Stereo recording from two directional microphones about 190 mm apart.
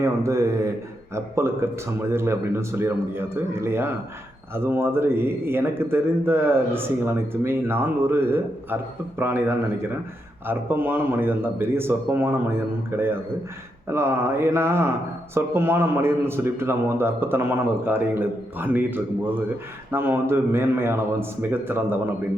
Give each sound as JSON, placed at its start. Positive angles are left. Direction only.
{"t": 0.0, "sound": "speech", "side_deg": -15}